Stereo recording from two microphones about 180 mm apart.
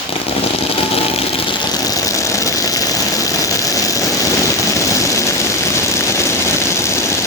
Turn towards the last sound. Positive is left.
turn(degrees=15)  # may be behind; listen again after turning